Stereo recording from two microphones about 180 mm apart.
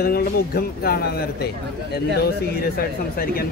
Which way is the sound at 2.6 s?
55° left (ahead or behind).